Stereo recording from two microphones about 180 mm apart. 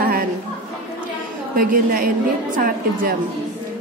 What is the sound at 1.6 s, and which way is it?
A woman's voice, 50° right (ahead or behind).